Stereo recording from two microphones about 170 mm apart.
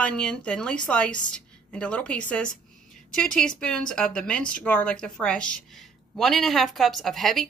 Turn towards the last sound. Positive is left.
turn(degrees=0)  # may be behind; listen again after turning